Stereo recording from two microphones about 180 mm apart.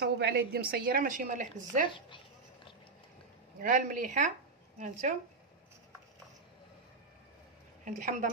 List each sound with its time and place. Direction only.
0.0 s a woman's voice: 60° right (ahead or behind); by 1.9 s 45° right (ahead or behind)
1.9 s a sound: 25° left (ahead or behind)
3.6 s a woman's voice: 50° right (ahead or behind)
7.8 s a woman's voice: 45° right (ahead or behind)